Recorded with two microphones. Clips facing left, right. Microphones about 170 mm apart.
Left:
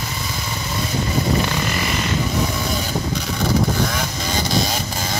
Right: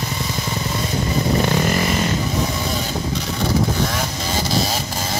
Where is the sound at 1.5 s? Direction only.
40° right (ahead or behind).